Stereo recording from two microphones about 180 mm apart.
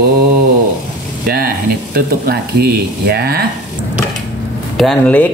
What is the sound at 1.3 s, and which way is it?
Speech, 55° right (ahead or behind).